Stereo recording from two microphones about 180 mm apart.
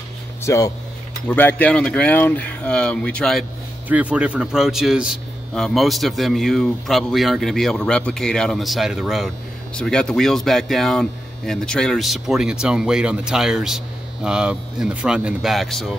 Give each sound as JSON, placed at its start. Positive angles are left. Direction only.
{"t": 0.4, "sound": "a man's voice", "side_deg": 15}
{"t": 3.9, "sound": "speech", "side_deg": -5}